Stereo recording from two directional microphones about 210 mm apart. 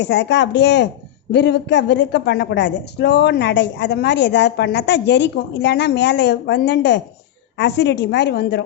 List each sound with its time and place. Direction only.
0.0 s a woman's voice: 55° left (ahead or behind)